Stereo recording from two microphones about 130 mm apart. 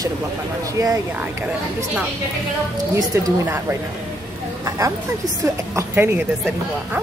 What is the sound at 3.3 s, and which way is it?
Speech, 20° right (ahead or behind).